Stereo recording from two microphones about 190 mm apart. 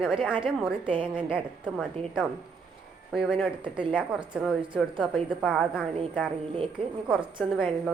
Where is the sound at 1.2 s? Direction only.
5° right (ahead or behind).